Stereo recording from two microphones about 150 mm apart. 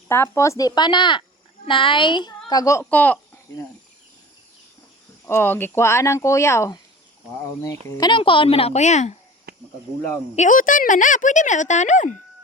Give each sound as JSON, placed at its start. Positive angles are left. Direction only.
{"t": 0.1, "sound": "a child's voice", "side_deg": 20}
{"t": 2.9, "sound": "speech", "side_deg": 10}
{"t": 5.2, "sound": "speech", "side_deg": 15}
{"t": 7.9, "sound": "a child's voice", "side_deg": 25}
{"t": 9.5, "sound": "insect", "side_deg": -90}
{"t": 10.3, "sound": "speech", "side_deg": 55}